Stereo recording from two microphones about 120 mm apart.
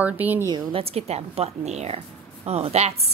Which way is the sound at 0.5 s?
50° right (ahead or behind).